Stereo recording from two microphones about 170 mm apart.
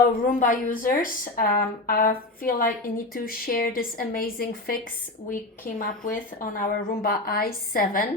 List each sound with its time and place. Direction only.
0.3 s speech: 50° left (ahead or behind)
5.8 s speech: 55° left (ahead or behind)